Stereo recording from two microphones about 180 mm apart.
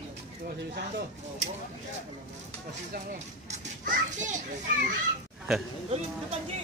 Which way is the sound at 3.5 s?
45° right (ahead or behind).